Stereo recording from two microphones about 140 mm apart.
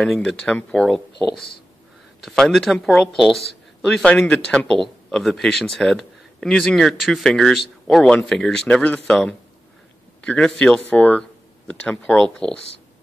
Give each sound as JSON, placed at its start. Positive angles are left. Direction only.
{"t": 0.0, "sound": "a man's voice", "side_deg": 5}